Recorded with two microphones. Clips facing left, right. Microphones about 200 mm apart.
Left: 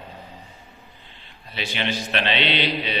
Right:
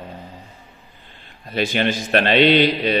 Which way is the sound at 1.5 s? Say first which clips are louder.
Right 8 dB; 45° right (ahead or behind).